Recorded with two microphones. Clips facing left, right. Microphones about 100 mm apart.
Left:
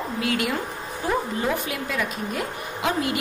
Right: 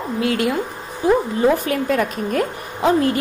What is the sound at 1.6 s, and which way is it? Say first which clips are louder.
A woman's voice: right 8 dB; 45° right (ahead or behind).